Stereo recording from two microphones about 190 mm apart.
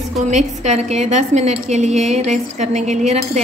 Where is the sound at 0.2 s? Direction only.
40° right (ahead or behind).